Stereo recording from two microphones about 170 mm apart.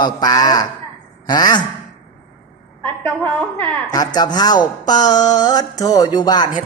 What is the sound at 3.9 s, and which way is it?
A man's voice, 20° left (ahead or behind).